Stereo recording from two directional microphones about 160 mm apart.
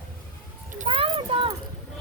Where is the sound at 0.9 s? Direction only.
35° right (ahead or behind).